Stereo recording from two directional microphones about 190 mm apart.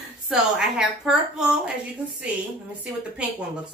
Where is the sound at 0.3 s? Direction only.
5° right (ahead or behind).